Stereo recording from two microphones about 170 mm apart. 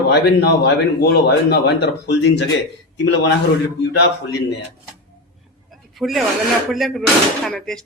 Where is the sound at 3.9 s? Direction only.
80° left.